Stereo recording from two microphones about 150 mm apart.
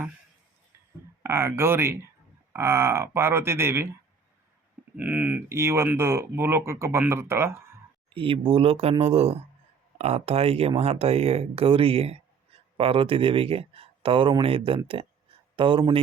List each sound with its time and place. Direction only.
1.2 s speech: 15° right (ahead or behind)
4.9 s speech: 10° right (ahead or behind)
8.1 s speech: 35° right (ahead or behind)